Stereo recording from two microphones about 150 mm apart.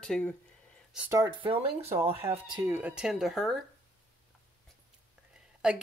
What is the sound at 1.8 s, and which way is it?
Speech, 20° right (ahead or behind).